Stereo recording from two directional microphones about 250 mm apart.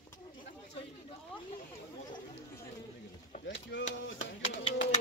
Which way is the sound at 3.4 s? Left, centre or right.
Left.